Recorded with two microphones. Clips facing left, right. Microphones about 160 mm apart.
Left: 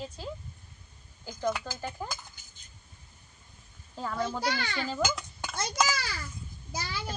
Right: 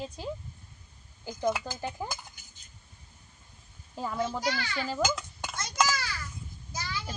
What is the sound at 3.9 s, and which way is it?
Speech, 5° right (ahead or behind).